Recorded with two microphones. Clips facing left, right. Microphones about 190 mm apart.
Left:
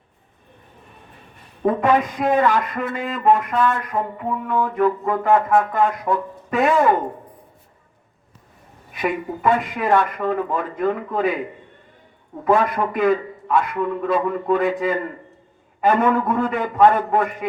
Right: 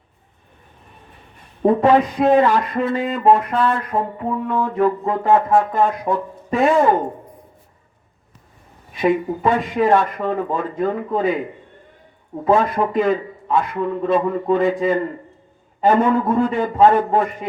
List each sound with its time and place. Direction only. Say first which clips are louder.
1.6 s speech: right 4 dB; 30° right (ahead or behind)
9.0 s speech: right 6 dB; 25° right (ahead or behind)
12.5 s speech: right 2 dB; 25° right (ahead or behind)